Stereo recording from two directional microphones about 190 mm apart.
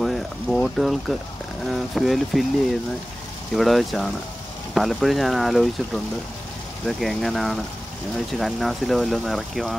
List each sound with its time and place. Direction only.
0.0 s boiling: centre (ahead or behind)
1.7 s speech: centre (ahead or behind)
3.5 s speech: centre (ahead or behind)
6.9 s speech: centre (ahead or behind)